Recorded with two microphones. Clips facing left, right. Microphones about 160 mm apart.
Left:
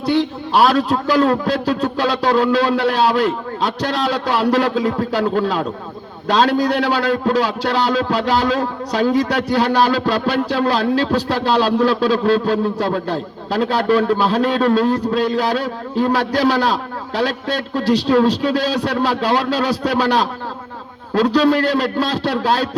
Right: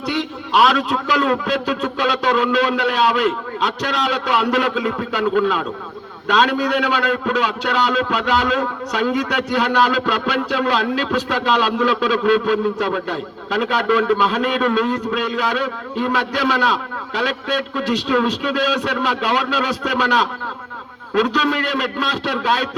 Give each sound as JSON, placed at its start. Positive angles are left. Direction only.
{"t": 0.0, "sound": "a man's voice", "side_deg": 35}